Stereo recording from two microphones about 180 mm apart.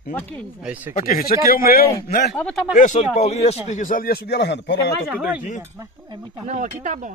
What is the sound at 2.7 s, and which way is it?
Speech, 45° left (ahead or behind).